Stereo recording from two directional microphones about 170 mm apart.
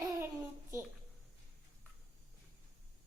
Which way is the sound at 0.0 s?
20° right (ahead or behind).